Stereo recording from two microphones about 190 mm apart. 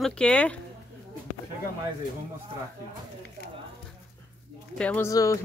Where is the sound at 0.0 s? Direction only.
5° left (ahead or behind).